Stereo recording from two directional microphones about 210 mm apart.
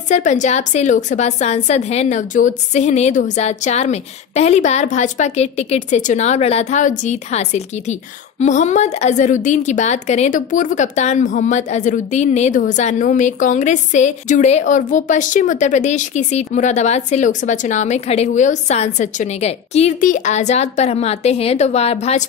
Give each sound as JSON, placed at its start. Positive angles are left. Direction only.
{"t": 0.1, "sound": "a woman's voice", "side_deg": 35}